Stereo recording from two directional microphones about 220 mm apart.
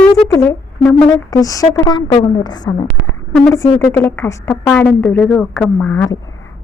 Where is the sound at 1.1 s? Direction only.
15° left (ahead or behind).